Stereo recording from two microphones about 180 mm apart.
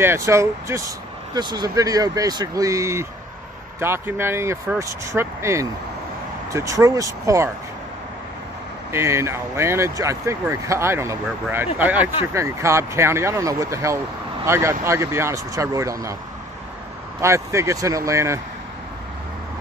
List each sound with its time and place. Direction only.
0.0 s speech: 15° right (ahead or behind)
8.9 s speech: 15° right (ahead or behind)
17.2 s speech: 15° right (ahead or behind)